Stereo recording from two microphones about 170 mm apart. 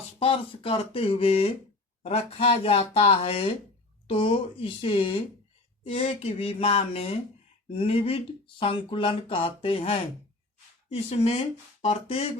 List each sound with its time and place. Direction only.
0.2 s speech: 35° left (ahead or behind)